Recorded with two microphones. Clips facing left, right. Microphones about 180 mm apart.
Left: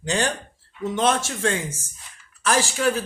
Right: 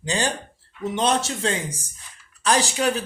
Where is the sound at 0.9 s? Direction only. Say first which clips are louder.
Even; 20° right (ahead or behind).